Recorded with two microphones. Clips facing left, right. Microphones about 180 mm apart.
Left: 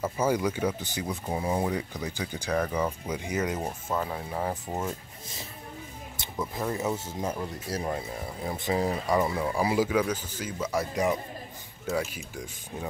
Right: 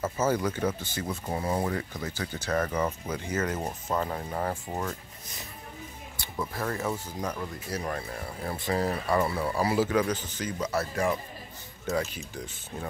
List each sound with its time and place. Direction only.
0.0 s speech: 10° left (ahead or behind)
3.5 s speech: 5° left (ahead or behind)
6.5 s speech: 15° left (ahead or behind)
7.9 s speech: 15° left (ahead or behind)